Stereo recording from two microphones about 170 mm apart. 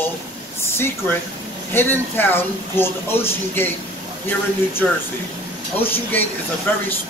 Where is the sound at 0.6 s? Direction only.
15° left (ahead or behind).